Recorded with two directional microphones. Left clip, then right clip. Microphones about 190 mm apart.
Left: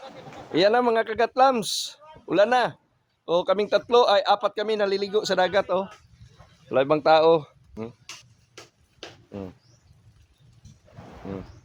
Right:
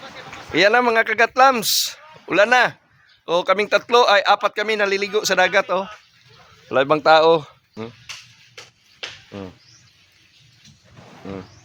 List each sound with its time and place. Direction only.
0.5 s speech: 15° right (ahead or behind)
6.7 s speech: 35° right (ahead or behind)